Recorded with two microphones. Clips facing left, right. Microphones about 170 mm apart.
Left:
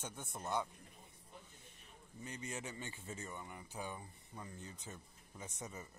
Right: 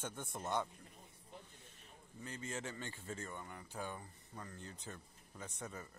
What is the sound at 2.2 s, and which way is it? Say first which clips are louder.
Speech: right 1 dB; 15° left (ahead or behind).